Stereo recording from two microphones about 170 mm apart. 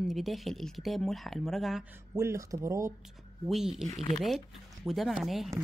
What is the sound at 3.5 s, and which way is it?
Speech, 5° right (ahead or behind).